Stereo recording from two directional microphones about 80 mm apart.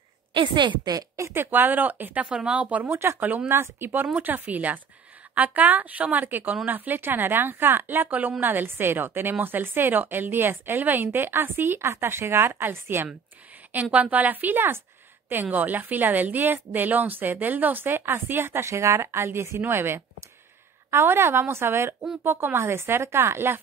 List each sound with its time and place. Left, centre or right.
0.3 s a woman's voice: right
0.9 s speech: right
1.3 s speech: right
3.4 s speech: right